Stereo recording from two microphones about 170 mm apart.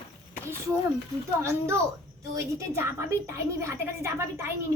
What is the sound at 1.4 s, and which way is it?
A woman's voice, 15° right (ahead or behind).